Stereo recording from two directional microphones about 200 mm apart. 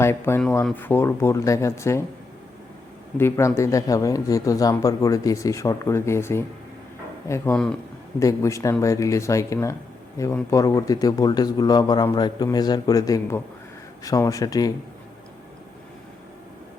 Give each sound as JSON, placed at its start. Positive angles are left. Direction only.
{"t": 0.0, "sound": "speech", "side_deg": 10}
{"t": 3.2, "sound": "a man's voice", "side_deg": 10}